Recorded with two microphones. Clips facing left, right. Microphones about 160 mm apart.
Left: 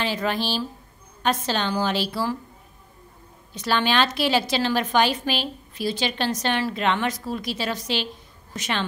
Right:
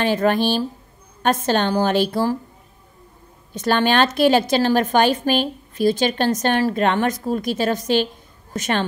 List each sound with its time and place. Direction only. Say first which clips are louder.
0.0 s a woman's voice: right 7 dB; 50° right (ahead or behind)
3.5 s a woman's voice: right 5 dB; 50° right (ahead or behind)